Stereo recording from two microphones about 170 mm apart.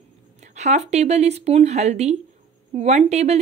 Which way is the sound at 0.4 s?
40° right (ahead or behind).